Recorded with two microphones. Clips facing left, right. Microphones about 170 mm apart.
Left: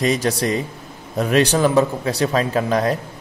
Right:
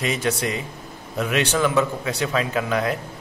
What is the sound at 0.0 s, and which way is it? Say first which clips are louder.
A man's voice: left 5 dB; 35° left (ahead or behind).